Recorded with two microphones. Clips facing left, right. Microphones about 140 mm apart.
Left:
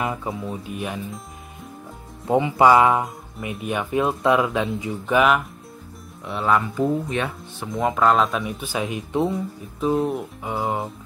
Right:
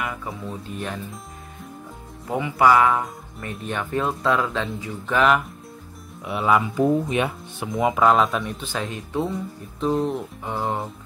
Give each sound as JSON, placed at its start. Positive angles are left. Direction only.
{"t": 0.0, "sound": "music", "side_deg": 25}
{"t": 0.5, "sound": "speech", "side_deg": 10}
{"t": 2.2, "sound": "speech", "side_deg": 25}
{"t": 3.3, "sound": "speech", "side_deg": 10}
{"t": 6.2, "sound": "speech", "side_deg": -5}